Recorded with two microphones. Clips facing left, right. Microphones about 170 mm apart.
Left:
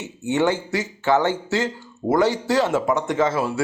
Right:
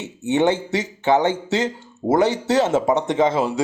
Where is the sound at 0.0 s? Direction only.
20° right (ahead or behind).